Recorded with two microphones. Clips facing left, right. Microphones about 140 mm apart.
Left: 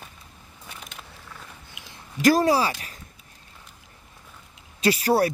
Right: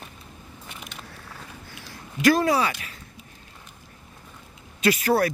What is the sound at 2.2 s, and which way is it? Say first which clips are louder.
Speech: left 1 dB; 40° left (ahead or behind).